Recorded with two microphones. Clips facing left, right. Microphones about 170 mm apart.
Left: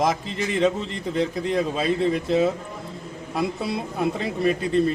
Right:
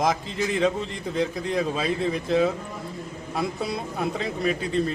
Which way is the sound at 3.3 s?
Centre (ahead or behind).